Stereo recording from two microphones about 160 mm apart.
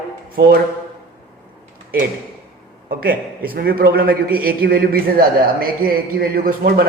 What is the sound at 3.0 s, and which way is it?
A man's voice, 65° right (ahead or behind).